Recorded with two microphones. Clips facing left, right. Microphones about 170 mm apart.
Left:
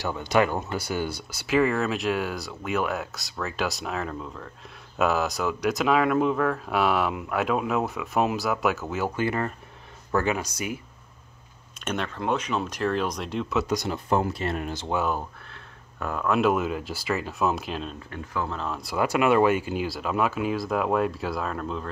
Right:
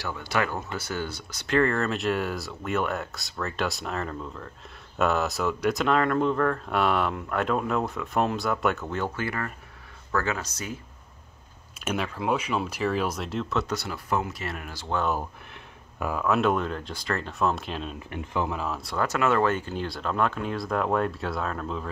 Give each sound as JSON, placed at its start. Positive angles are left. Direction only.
{"t": 0.0, "sound": "speech", "side_deg": 20}
{"t": 9.1, "sound": "speech", "side_deg": 20}
{"t": 11.8, "sound": "speech", "side_deg": -5}
{"t": 13.7, "sound": "speech", "side_deg": 20}
{"t": 14.9, "sound": "speech", "side_deg": 10}
{"t": 16.0, "sound": "speech", "side_deg": -5}
{"t": 18.1, "sound": "speech", "side_deg": -20}
{"t": 18.6, "sound": "speech", "side_deg": 0}
{"t": 18.9, "sound": "speech", "side_deg": 15}